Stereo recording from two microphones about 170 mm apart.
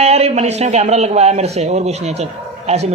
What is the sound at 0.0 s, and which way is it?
A man's voice, 40° right (ahead or behind).